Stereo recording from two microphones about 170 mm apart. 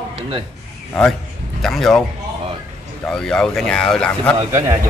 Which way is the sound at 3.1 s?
5° left (ahead or behind).